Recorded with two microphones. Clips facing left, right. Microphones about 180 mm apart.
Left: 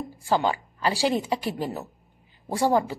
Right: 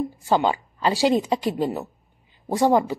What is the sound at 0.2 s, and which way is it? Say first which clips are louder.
Speech: right 2 dB; 20° right (ahead or behind).